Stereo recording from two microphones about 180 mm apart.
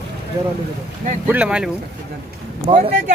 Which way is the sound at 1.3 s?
5° right (ahead or behind).